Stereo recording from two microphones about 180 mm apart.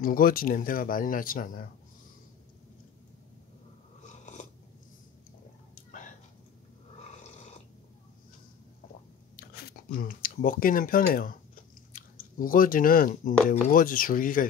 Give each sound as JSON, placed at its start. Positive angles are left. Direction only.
{"t": 0.0, "sound": "speech", "side_deg": 55}
{"t": 4.0, "sound": "biting", "side_deg": 40}
{"t": 5.9, "sound": "a sound", "side_deg": 45}
{"t": 9.4, "sound": "speech", "side_deg": 55}